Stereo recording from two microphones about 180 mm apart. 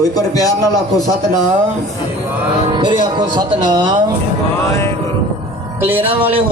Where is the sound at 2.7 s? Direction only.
25° right (ahead or behind).